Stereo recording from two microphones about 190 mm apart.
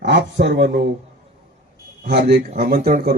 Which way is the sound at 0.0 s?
65° right (ahead or behind).